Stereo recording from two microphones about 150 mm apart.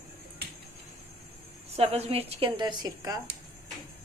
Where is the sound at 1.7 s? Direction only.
40° right (ahead or behind); by 3.2 s 25° right (ahead or behind).